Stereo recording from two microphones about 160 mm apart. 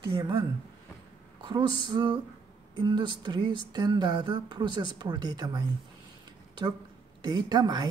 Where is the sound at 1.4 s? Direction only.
30° right (ahead or behind).